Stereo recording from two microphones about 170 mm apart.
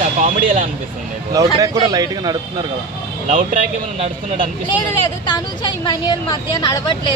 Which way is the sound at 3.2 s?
45° right (ahead or behind).